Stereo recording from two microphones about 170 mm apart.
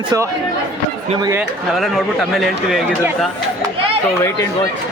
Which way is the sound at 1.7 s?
Centre (ahead or behind).